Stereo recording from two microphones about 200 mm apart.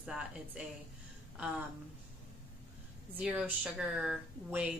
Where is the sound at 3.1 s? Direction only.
5° right (ahead or behind).